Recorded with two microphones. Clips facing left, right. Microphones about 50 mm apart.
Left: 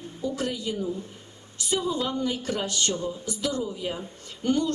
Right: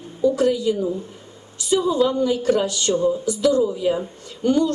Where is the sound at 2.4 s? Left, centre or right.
Right.